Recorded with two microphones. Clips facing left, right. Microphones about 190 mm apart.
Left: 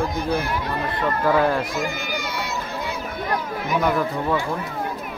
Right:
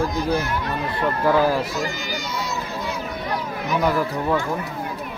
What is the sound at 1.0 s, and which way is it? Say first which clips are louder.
Speech: right 1 dB; 5° right (ahead or behind).